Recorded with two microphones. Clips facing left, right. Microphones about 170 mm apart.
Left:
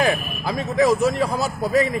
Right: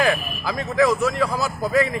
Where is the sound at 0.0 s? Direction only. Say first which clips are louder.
Even; 20° left (ahead or behind).